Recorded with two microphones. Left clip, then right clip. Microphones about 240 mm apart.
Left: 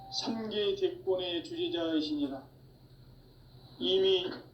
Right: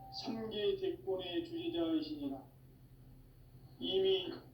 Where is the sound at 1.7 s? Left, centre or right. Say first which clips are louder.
Left 4 dB; left.